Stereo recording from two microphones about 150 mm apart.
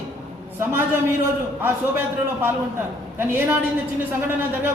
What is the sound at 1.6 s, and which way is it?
Speech, 15° right (ahead or behind).